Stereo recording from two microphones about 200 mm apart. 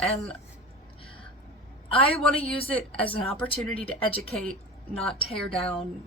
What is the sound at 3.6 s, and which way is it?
A woman's voice, 5° left (ahead or behind).